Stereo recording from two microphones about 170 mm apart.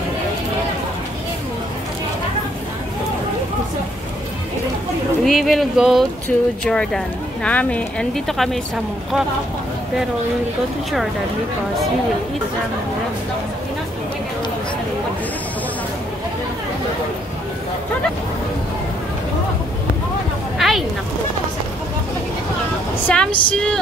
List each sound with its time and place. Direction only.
5.2 s speech: centre (ahead or behind)
20.5 s a sound: centre (ahead or behind)
23.0 s speech: 5° left (ahead or behind)